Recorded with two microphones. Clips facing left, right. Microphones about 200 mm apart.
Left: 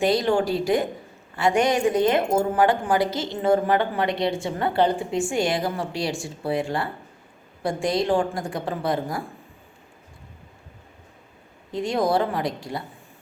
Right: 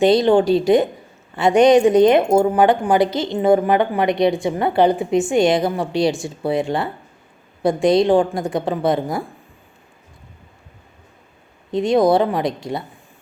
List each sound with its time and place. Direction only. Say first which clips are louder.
0.0 s a woman's voice: right 7 dB; 20° right (ahead or behind)
11.7 s a woman's voice: right 7 dB; 20° right (ahead or behind)